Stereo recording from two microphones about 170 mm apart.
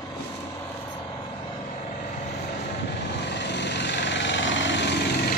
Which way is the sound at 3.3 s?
90° left.